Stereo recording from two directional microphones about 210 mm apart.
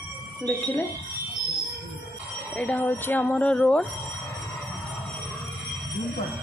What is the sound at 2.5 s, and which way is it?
A woman's voice, 5° left (ahead or behind).